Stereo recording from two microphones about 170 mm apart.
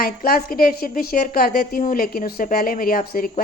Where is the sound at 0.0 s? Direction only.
60° left (ahead or behind).